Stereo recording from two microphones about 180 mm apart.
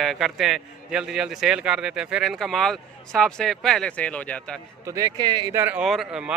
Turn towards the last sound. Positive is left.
turn(degrees=-5)  # may be behind; listen again after turning